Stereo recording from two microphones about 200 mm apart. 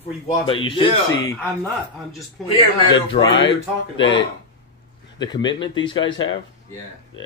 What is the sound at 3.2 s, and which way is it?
Speech, 35° left (ahead or behind).